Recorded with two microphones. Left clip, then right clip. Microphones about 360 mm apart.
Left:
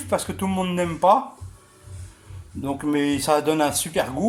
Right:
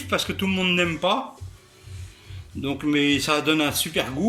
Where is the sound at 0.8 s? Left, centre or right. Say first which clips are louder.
Left 9 dB; left.